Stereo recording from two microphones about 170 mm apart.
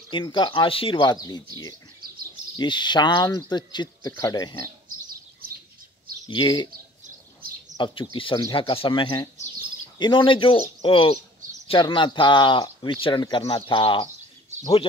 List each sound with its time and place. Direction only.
0.1 s speech: 25° left (ahead or behind)
6.2 s speech: 25° left (ahead or behind)
7.7 s speech: 30° left (ahead or behind)